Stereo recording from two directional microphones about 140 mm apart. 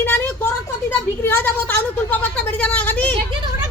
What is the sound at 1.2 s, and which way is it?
A woman's voice, 15° left (ahead or behind).